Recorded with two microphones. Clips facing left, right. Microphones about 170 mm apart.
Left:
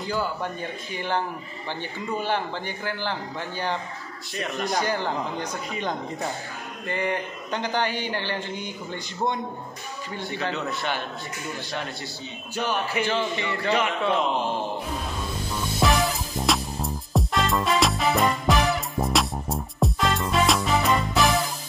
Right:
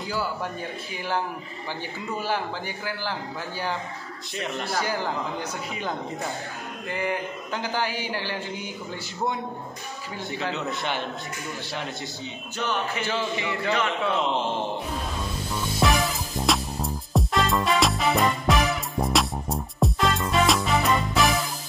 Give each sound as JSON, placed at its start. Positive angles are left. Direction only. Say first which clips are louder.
{"t": 0.0, "sound": "a man's voice", "louder": "left 1 dB", "side_deg": -5}
{"t": 4.8, "sound": "a man's voice", "louder": "left 1 dB", "side_deg": -5}
{"t": 10.5, "sound": "a man's voice", "louder": "even", "side_deg": -20}
{"t": 12.5, "sound": "speech", "louder": "left 2 dB", "side_deg": 10}
{"t": 13.1, "sound": "a man's voice", "louder": "left 1 dB", "side_deg": -5}
{"t": 13.7, "sound": "speech", "louder": "left 2 dB", "side_deg": 15}
{"t": 14.3, "sound": "a man's voice", "louder": "even", "side_deg": -20}
{"t": 15.8, "sound": "music", "louder": "left 1 dB", "side_deg": 0}